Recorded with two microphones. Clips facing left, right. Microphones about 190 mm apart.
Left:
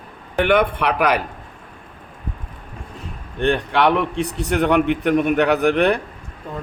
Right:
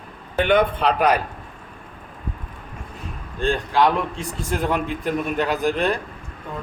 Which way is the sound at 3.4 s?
65° left (ahead or behind).